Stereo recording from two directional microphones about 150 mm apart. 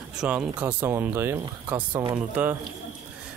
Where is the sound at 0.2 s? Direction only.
5° right (ahead or behind).